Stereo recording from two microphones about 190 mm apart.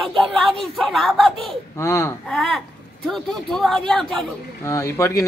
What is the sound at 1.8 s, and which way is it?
Speech, 15° left (ahead or behind).